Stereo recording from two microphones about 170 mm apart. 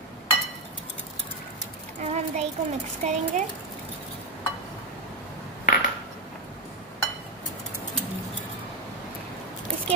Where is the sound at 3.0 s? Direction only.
40° right (ahead or behind).